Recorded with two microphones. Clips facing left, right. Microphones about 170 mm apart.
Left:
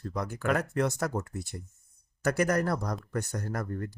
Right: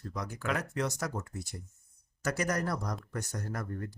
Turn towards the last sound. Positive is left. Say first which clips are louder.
# left 4 dB
turn(degrees=55)  # may be behind; listen again after turning